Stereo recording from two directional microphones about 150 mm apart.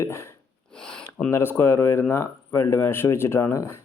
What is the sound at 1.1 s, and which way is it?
Speech, 10° left (ahead or behind).